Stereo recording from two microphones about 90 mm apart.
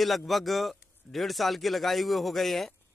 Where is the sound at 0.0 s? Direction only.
Centre (ahead or behind).